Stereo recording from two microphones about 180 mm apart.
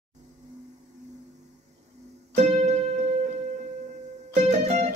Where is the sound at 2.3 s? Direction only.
40° right (ahead or behind).